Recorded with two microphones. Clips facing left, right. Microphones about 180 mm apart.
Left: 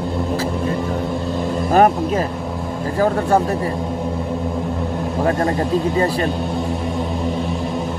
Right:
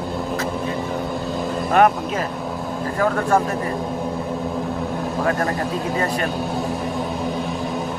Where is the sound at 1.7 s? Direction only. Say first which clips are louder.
Left 2 dB; 35° left (ahead or behind).